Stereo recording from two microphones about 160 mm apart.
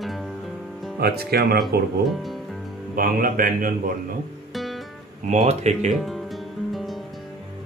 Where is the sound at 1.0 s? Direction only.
75° right (ahead or behind).